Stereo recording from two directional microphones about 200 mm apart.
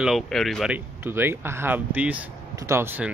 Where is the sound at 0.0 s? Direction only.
Centre (ahead or behind).